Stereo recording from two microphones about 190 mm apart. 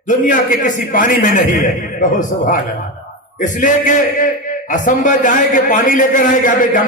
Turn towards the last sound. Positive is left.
turn(degrees=45)  # may be behind; listen again after turning